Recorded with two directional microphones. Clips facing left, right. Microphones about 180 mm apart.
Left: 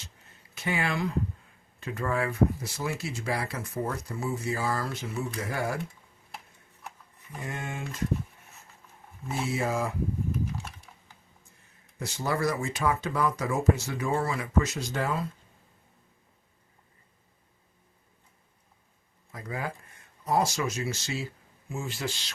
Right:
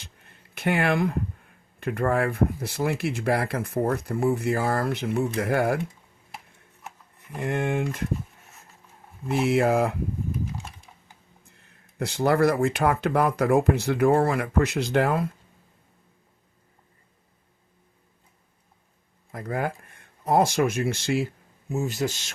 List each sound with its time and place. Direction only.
0.0 s a sound: 55° right (ahead or behind)
1.8 s speech: 55° right (ahead or behind)
7.3 s speech: 65° right (ahead or behind)
9.2 s speech: 65° right (ahead or behind)
11.9 s speech: 60° right (ahead or behind)
19.3 s speech: 55° right (ahead or behind)
21.7 s speech: 40° right (ahead or behind)